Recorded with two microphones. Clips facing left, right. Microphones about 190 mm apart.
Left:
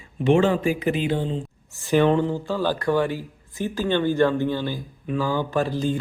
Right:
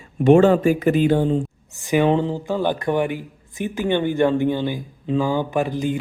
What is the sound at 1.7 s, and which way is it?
Speech, 15° right (ahead or behind).